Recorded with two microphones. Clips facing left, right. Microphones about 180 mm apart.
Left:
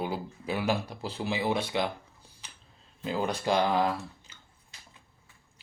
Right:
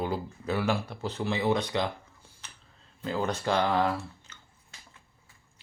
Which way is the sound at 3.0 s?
15° left (ahead or behind).